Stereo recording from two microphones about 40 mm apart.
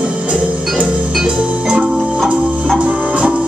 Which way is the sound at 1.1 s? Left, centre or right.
Centre.